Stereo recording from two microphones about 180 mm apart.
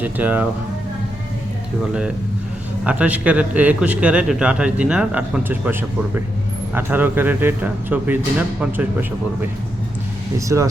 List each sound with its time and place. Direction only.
0.0 s a man's voice: 10° right (ahead or behind)
1.9 s a man's voice: 5° right (ahead or behind)
6.7 s a man's voice: 10° right (ahead or behind)
10.3 s a man's voice: 15° right (ahead or behind)